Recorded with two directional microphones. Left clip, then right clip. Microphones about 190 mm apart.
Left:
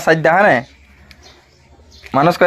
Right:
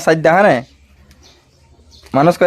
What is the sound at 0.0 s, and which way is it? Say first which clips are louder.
Speech: right 1 dB; 20° right (ahead or behind).